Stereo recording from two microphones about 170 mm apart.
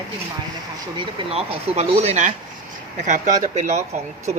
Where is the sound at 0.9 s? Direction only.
30° right (ahead or behind).